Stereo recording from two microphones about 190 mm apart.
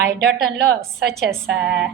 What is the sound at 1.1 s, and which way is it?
Speech, centre (ahead or behind).